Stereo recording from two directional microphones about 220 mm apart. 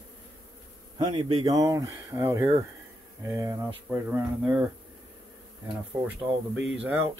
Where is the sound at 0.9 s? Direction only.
20° right (ahead or behind); by 4.6 s 5° right (ahead or behind).